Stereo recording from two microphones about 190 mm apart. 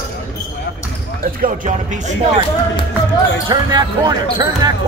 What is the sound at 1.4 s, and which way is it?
Speech, 45° right (ahead or behind).